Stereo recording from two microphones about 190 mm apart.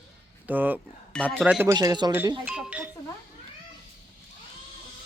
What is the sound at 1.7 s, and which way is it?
Speech, 20° right (ahead or behind).